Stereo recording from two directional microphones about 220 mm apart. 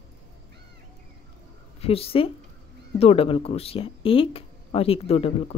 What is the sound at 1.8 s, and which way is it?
A woman's voice, 25° left (ahead or behind).